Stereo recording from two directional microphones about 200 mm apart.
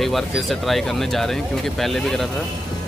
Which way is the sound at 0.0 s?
Centre (ahead or behind).